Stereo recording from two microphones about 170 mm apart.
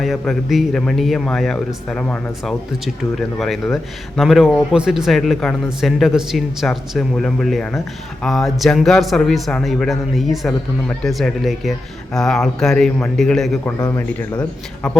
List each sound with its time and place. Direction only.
0.0 s a man's voice: centre (ahead or behind)
13.7 s speech: 25° left (ahead or behind)